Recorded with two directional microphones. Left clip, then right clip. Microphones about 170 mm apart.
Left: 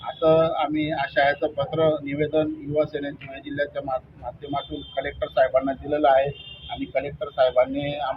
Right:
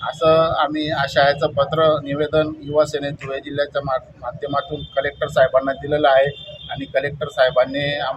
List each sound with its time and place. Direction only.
0.2 s speech: 25° right (ahead or behind)